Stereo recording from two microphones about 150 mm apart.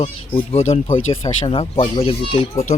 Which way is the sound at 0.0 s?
45° left (ahead or behind).